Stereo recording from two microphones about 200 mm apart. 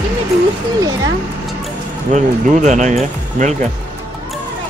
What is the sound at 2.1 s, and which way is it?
Speech, 35° right (ahead or behind).